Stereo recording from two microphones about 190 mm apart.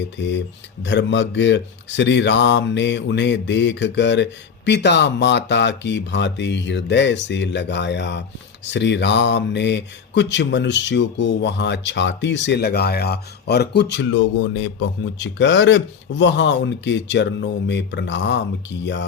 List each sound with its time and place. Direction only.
0.0 s mantra: 65° left (ahead or behind)